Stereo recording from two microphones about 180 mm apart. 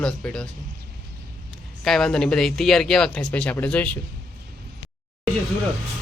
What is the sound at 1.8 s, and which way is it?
Speech, centre (ahead or behind).